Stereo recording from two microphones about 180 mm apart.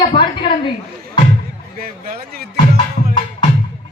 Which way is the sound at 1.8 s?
55° right (ahead or behind).